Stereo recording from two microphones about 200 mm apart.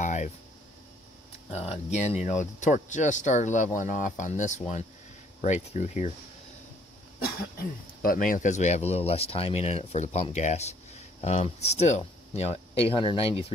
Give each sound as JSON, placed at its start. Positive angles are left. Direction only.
{"t": 0.0, "sound": "a sound", "side_deg": 35}
{"t": 1.5, "sound": "speech", "side_deg": 35}
{"t": 8.0, "sound": "speech", "side_deg": 45}